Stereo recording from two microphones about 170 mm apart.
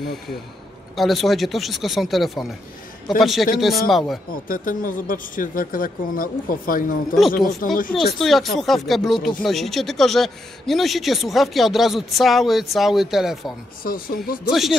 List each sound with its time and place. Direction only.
0.0 s speech: 70° left (ahead or behind)
0.9 s a man's voice: centre (ahead or behind)
4.3 s speech: 55° left (ahead or behind)
8.2 s a man's voice: centre (ahead or behind)
13.8 s speech: 60° left (ahead or behind)
14.5 s a man's voice: centre (ahead or behind)